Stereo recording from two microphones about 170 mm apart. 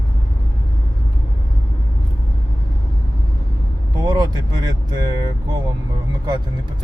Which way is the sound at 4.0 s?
25° right (ahead or behind).